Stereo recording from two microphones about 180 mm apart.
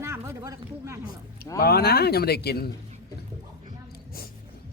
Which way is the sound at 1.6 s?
60° left (ahead or behind).